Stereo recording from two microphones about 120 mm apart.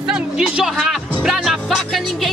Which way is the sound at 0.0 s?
5° right (ahead or behind).